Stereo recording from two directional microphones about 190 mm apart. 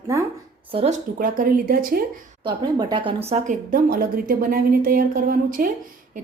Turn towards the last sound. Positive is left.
turn(degrees=-45)  # may be behind; listen again after turning